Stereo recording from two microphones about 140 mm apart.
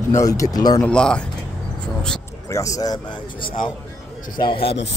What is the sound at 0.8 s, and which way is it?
Speech, 5° left (ahead or behind).